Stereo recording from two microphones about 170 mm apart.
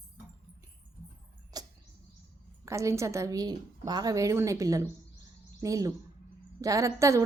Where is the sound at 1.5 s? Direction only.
20° right (ahead or behind).